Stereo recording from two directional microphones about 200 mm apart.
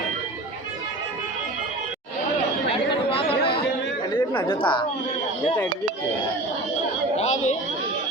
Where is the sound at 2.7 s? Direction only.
25° left (ahead or behind).